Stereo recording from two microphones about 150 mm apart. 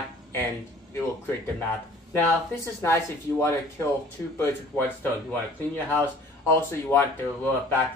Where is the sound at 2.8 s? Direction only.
20° left (ahead or behind).